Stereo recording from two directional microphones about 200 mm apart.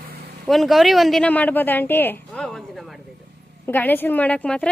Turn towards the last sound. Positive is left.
turn(degrees=5)  # may be behind; listen again after turning